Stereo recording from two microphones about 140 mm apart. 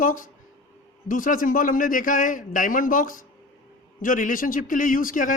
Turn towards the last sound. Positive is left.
turn(degrees=70)  # may be behind; listen again after turning